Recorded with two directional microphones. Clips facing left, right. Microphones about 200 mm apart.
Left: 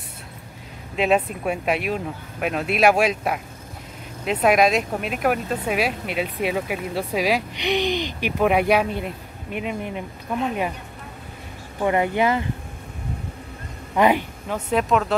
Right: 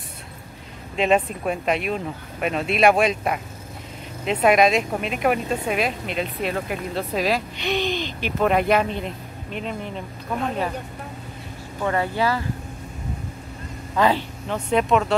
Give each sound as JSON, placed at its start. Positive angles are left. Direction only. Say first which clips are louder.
{"t": 0.9, "sound": "speech", "louder": "even", "side_deg": 5}
{"t": 11.8, "sound": "speech", "louder": "left 3 dB", "side_deg": 15}
{"t": 13.9, "sound": "speech", "louder": "left 2 dB", "side_deg": 15}
{"t": 14.7, "sound": "speech", "louder": "right 1 dB", "side_deg": 0}